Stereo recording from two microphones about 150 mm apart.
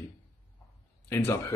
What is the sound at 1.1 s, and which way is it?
Speech, 15° left (ahead or behind).